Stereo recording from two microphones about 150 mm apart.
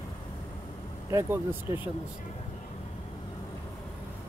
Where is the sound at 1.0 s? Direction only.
20° right (ahead or behind).